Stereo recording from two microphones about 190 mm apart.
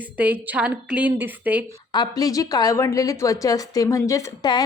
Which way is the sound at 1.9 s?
20° left (ahead or behind).